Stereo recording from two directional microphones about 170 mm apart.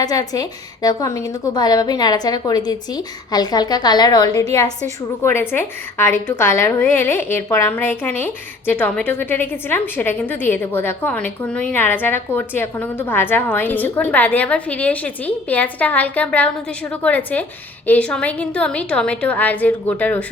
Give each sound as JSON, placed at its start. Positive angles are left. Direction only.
{"t": 0.0, "sound": "a woman's voice", "side_deg": 20}
{"t": 5.2, "sound": "a woman's voice", "side_deg": 15}